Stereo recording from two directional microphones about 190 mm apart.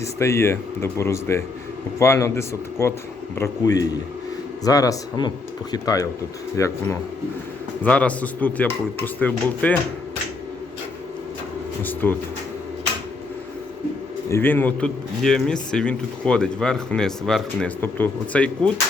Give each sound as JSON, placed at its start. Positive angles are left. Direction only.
{"t": 0.0, "sound": "speech", "side_deg": 15}
{"t": 11.8, "sound": "speech", "side_deg": 10}
{"t": 14.3, "sound": "speech", "side_deg": 10}